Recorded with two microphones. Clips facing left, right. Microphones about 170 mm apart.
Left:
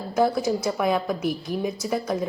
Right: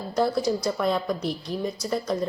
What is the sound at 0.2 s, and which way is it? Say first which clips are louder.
A woman's voice: left 2 dB; 5° left (ahead or behind).